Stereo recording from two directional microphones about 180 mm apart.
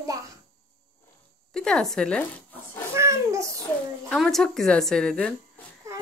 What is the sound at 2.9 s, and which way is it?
Speech, 15° right (ahead or behind).